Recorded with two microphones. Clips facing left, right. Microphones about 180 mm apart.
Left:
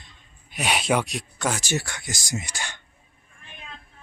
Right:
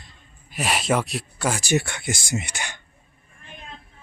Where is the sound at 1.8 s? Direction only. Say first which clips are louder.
Right 6 dB; 25° right (ahead or behind).